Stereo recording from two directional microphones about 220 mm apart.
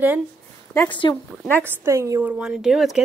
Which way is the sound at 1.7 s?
15° right (ahead or behind).